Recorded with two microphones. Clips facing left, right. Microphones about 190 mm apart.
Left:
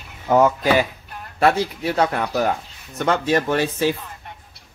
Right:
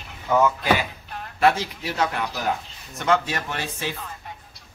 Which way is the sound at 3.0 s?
40° left (ahead or behind).